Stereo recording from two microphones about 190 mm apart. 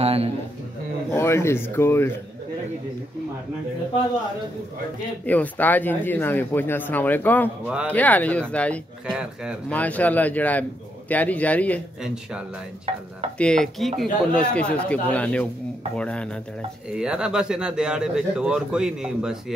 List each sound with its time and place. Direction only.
0.0 s a sound: 30° right (ahead or behind)
1.1 s speech: 15° left (ahead or behind)
5.2 s speech: 10° left (ahead or behind)
7.6 s speech: 5° right (ahead or behind)
7.9 s speech: 10° left (ahead or behind)
9.0 s speech: 5° right (ahead or behind)
9.7 s speech: 10° left (ahead or behind)
12.0 s speech: 5° right (ahead or behind)